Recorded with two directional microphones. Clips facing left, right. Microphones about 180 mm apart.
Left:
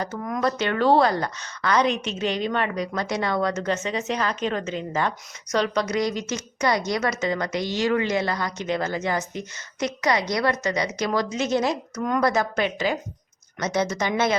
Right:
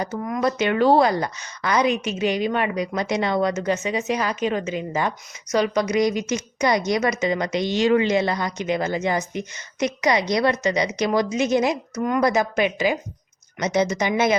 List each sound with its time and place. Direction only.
0.0 s a woman's voice: 10° right (ahead or behind)